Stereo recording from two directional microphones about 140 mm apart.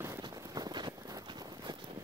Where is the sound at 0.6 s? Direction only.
30° right (ahead or behind).